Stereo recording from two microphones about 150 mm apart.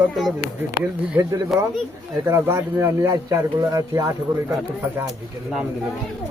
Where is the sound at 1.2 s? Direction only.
15° right (ahead or behind).